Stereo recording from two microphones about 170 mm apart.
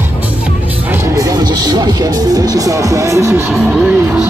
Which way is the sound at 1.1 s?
20° right (ahead or behind).